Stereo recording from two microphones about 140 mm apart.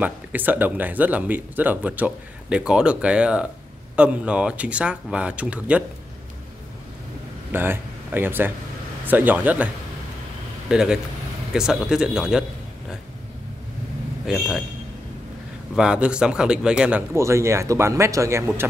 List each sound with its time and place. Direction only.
0.0 s speech: 10° right (ahead or behind)
7.5 s speech: 15° right (ahead or behind)
10.7 s speech: 5° right (ahead or behind)
14.2 s speech: 5° right (ahead or behind)
15.7 s speech: 5° right (ahead or behind)
17.1 s speech: 20° right (ahead or behind)